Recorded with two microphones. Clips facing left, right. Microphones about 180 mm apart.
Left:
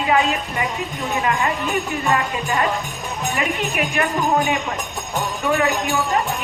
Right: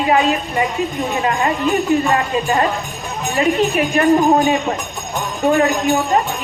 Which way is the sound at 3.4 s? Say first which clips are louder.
Right 9 dB; 30° right (ahead or behind).